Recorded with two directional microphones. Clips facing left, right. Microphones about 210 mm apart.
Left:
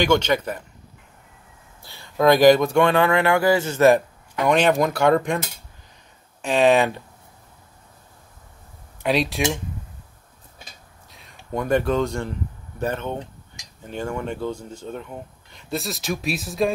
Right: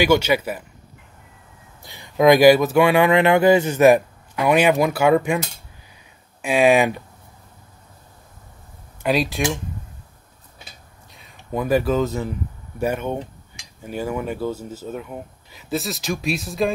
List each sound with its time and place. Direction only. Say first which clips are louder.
0.0 s speech: right 2 dB; 10° right (ahead or behind)
1.8 s speech: right 3 dB; 15° right (ahead or behind)
6.4 s speech: right 1 dB; 10° right (ahead or behind)
9.0 s speech: right 1 dB; centre (ahead or behind)
11.1 s speech: right 1 dB; centre (ahead or behind)